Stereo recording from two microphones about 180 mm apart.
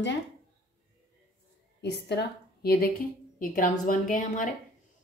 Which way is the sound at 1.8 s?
70° left (ahead or behind).